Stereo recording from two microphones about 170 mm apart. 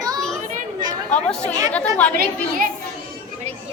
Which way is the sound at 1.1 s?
5° left (ahead or behind).